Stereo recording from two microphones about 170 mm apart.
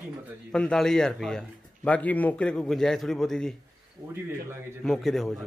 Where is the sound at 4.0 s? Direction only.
25° right (ahead or behind).